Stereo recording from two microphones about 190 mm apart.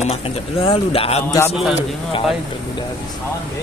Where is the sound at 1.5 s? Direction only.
Centre (ahead or behind).